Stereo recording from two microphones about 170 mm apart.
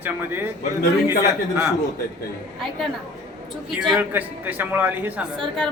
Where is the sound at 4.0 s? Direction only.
10° right (ahead or behind).